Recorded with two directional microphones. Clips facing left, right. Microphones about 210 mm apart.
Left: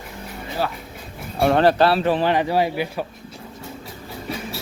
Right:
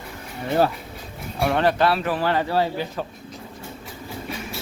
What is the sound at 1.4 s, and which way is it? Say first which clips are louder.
Speech: left 4 dB; 35° left (ahead or behind).